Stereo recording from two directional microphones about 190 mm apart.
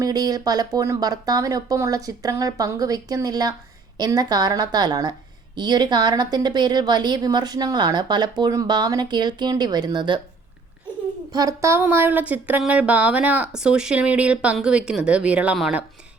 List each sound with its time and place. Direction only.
0.0 s a woman's voice: 20° right (ahead or behind)
11.3 s speech: 20° right (ahead or behind)